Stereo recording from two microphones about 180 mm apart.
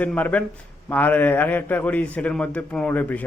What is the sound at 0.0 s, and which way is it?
A man's voice, 10° left (ahead or behind).